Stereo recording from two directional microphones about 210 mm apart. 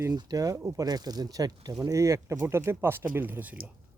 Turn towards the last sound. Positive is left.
turn(degrees=-10)  # may be behind; listen again after turning